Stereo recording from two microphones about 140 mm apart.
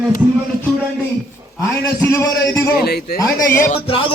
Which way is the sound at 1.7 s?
20° left (ahead or behind).